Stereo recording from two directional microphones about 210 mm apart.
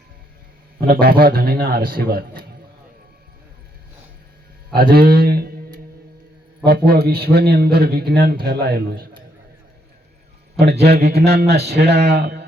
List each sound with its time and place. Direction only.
0.8 s a man's voice: 45° right (ahead or behind)
4.7 s a sound: 45° right (ahead or behind)
6.7 s a man's voice: 50° right (ahead or behind)
10.6 s a man's voice: 50° right (ahead or behind)